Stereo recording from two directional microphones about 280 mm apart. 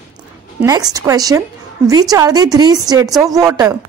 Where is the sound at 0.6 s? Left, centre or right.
Centre.